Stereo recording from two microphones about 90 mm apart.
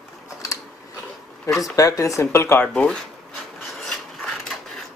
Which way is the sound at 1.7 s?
40° left (ahead or behind).